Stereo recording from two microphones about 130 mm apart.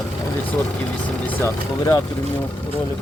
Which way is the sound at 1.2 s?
15° left (ahead or behind).